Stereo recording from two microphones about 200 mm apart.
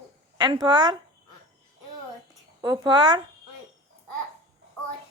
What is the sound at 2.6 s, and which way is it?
Speech, 20° right (ahead or behind).